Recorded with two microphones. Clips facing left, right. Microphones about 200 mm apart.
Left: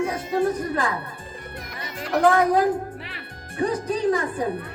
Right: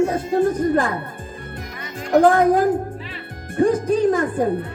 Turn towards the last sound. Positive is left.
turn(degrees=-50)  # may be behind; listen again after turning